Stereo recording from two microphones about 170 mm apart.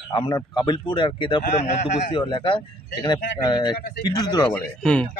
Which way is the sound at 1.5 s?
45° left (ahead or behind).